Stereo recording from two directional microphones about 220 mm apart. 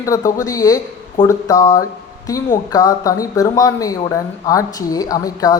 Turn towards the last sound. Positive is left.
turn(degrees=15)  # may be behind; listen again after turning